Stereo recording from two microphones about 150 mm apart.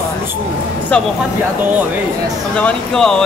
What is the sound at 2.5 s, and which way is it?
Speech, 5° left (ahead or behind).